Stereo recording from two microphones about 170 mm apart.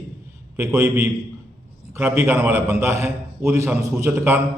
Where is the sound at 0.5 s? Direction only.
5° right (ahead or behind).